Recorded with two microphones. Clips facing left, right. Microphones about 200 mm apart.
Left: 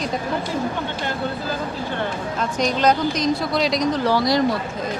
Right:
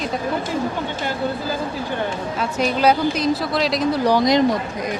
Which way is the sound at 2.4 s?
5° right (ahead or behind).